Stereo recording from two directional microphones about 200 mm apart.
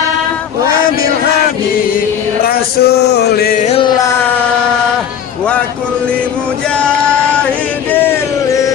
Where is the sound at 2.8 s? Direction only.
55° left (ahead or behind).